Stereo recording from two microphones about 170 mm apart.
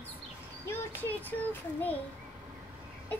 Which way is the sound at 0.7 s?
15° left (ahead or behind).